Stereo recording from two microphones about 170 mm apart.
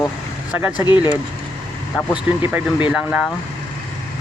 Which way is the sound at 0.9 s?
25° left (ahead or behind).